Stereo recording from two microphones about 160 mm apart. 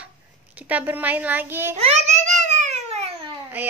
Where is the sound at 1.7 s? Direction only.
45° right (ahead or behind).